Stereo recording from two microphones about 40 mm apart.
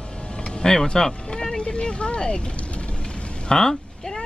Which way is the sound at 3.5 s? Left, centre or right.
Centre.